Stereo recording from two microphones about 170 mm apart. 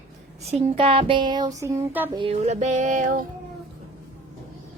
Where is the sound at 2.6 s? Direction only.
45° right (ahead or behind).